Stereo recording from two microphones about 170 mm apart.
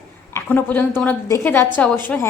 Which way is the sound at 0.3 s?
10° left (ahead or behind).